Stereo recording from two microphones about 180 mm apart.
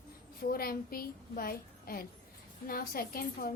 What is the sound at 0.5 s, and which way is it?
A child's voice, 55° left (ahead or behind).